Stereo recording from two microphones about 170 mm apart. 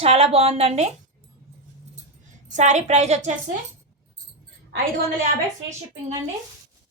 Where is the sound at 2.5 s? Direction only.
45° right (ahead or behind).